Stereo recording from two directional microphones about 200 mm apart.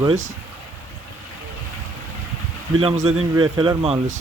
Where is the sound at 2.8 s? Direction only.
30° right (ahead or behind).